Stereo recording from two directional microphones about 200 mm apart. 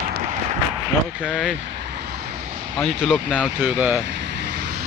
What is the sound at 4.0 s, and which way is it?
Vehicle, 60° right (ahead or behind).